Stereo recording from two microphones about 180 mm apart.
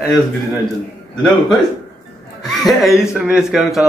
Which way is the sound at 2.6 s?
Centre (ahead or behind).